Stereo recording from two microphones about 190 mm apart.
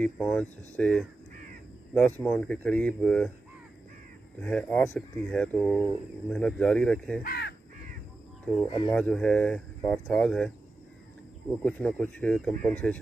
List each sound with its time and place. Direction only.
0.0 s speech: 5° left (ahead or behind)
1.3 s crow: 45° right (ahead or behind)
2.2 s speech: 5° left (ahead or behind)
4.4 s speech: 5° left (ahead or behind)
7.2 s speech: 60° left (ahead or behind)
8.6 s speech: 25° left (ahead or behind)
8.9 s speech: 5° left (ahead or behind)
11.6 s speech: 5° left (ahead or behind)